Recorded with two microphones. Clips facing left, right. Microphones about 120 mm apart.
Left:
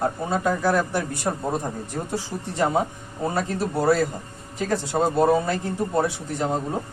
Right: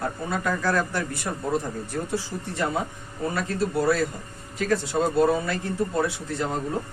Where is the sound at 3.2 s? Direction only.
30° left (ahead or behind).